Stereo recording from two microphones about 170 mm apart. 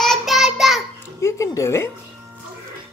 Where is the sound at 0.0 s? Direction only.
Centre (ahead or behind).